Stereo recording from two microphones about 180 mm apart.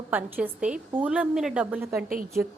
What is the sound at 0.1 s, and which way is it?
A woman's voice, 10° right (ahead or behind).